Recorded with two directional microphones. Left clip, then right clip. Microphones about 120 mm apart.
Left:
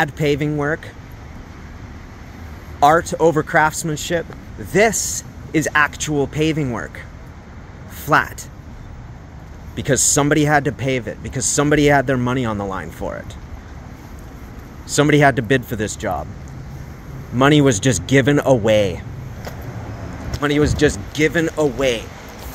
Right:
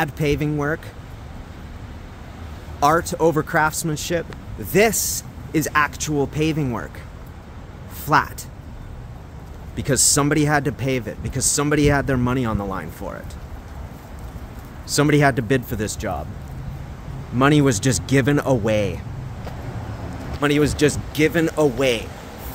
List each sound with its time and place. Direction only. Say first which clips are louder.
0.0 s speech: left 3 dB; 15° right (ahead or behind)
2.8 s speech: left 4 dB; 10° right (ahead or behind)
5.5 s speech: left 3 dB; centre (ahead or behind)
9.8 s speech: left 2 dB; 5° right (ahead or behind)
15.0 s speech: left 4 dB; 5° right (ahead or behind)
16.0 s speech: left 6 dB; 15° right (ahead or behind)
17.4 s speech: left 3 dB; 5° right (ahead or behind)
20.3 s speech: left 1 dB; 20° right (ahead or behind)